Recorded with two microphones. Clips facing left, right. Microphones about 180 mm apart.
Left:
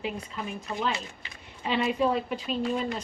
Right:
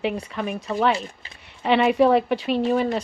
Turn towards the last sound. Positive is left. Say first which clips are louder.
# right 8 dB
turn(degrees=-75)  # may be behind; listen again after turning